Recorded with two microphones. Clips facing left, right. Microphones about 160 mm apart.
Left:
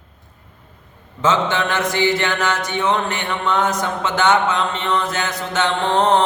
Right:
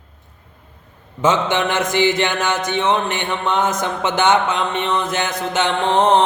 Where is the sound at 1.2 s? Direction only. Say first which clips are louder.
Right 1 dB; 20° right (ahead or behind).